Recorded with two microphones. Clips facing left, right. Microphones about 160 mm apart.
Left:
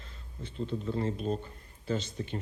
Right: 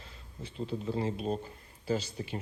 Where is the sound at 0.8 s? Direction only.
30° right (ahead or behind).